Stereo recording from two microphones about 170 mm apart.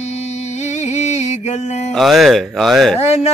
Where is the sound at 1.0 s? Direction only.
45° left (ahead or behind).